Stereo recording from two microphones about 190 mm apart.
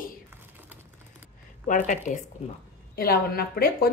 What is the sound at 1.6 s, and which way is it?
Speech, 40° left (ahead or behind).